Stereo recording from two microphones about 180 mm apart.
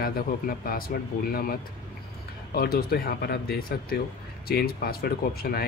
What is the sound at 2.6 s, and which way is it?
Speech, 60° left (ahead or behind).